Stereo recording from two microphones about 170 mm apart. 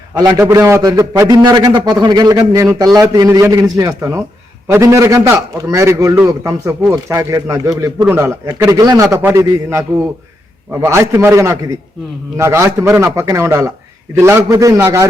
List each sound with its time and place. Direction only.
0.1 s a man's voice: 20° right (ahead or behind)